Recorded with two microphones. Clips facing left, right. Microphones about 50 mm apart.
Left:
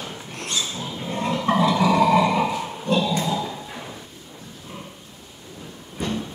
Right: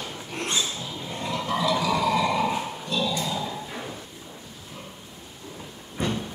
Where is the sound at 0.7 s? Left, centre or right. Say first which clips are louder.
Left 5 dB; left.